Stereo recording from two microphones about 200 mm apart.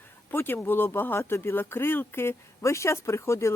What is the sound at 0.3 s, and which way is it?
Speech, 10° left (ahead or behind).